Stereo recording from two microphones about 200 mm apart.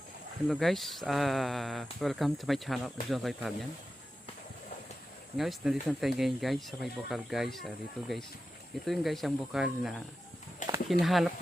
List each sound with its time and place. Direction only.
0.4 s speech: centre (ahead or behind)
5.4 s speech: centre (ahead or behind)
10.6 s a sound: 40° left (ahead or behind)
11.0 s speech: centre (ahead or behind)